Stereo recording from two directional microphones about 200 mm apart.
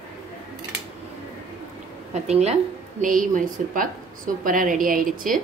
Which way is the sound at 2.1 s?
35° right (ahead or behind).